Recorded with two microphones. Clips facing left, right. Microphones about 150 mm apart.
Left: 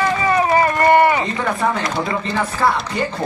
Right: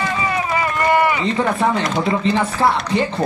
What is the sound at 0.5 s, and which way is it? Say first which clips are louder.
Run: left 3 dB; 45° left (ahead or behind).